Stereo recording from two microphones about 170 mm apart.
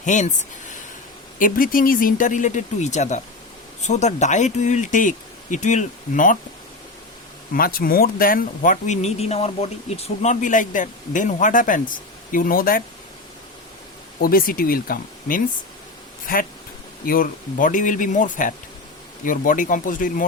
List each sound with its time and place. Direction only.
0.0 s speech: 45° left (ahead or behind)
7.5 s speech: 60° left (ahead or behind)
14.2 s speech: 60° left (ahead or behind)